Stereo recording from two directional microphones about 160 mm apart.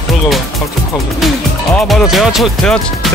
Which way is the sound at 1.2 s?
Centre (ahead or behind).